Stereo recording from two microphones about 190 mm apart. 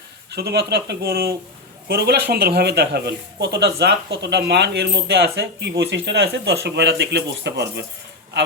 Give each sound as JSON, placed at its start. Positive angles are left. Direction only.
{"t": 0.3, "sound": "speech", "side_deg": -60}